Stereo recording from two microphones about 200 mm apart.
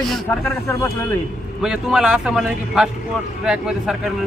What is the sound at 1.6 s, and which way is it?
Speech, 5° right (ahead or behind).